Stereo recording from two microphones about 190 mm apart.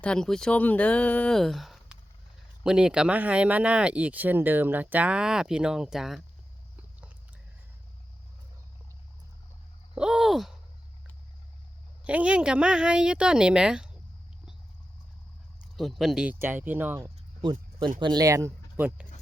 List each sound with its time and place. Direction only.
0.0 s speech: 5° left (ahead or behind)
9.9 s a sound: 5° right (ahead or behind)
12.0 s speech: 5° right (ahead or behind)
15.7 s speech: centre (ahead or behind)
17.4 s a sound: 25° right (ahead or behind)
18.0 s speech: 20° right (ahead or behind)